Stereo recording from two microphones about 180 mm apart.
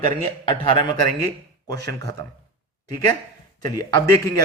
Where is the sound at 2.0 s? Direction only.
20° left (ahead or behind).